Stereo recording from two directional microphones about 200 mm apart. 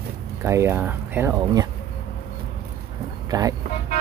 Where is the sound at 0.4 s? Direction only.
15° right (ahead or behind).